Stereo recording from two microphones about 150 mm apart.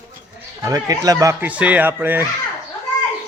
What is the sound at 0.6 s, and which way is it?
Speech, 20° right (ahead or behind).